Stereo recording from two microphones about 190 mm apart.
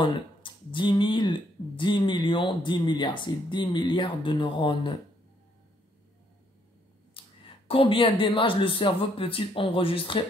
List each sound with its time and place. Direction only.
0.0 s speech: 25° left (ahead or behind)
7.2 s a sound: 30° left (ahead or behind)
7.6 s speech: 30° left (ahead or behind)